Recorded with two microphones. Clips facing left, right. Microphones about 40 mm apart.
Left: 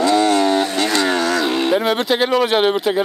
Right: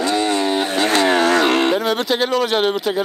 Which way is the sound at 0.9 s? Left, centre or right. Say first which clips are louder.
Right 2 dB; right.